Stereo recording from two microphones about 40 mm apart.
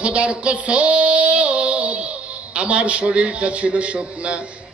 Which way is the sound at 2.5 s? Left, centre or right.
Right.